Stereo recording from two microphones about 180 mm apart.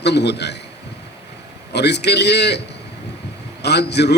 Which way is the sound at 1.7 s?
70° left (ahead or behind).